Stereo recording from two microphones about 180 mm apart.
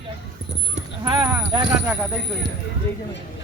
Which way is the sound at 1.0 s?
25° right (ahead or behind).